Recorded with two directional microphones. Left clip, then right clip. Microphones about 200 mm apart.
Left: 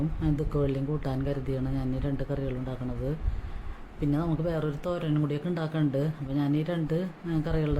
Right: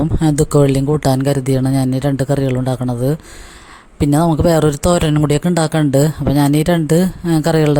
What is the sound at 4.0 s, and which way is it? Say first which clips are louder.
Speech: right 16 dB; 55° right (ahead or behind).